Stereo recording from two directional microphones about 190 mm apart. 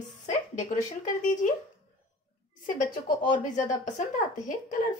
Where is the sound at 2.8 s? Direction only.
45° left (ahead or behind).